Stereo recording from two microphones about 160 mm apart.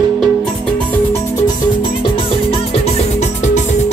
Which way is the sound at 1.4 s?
30° left (ahead or behind).